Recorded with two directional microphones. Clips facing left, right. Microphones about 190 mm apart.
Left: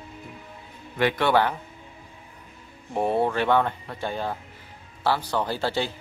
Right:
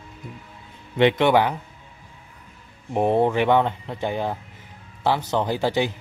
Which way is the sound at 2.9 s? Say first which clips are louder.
Right 4 dB; 20° right (ahead or behind).